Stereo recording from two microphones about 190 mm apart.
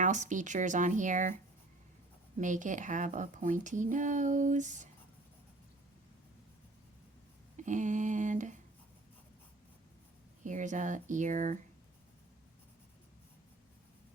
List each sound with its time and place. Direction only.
0.0 s speech: 40° right (ahead or behind)
2.4 s speech: 40° right (ahead or behind)
7.5 s speech: 40° right (ahead or behind)
10.4 s speech: 40° right (ahead or behind)